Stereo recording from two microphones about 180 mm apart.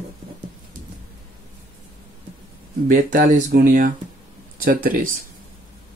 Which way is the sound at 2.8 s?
50° right (ahead or behind).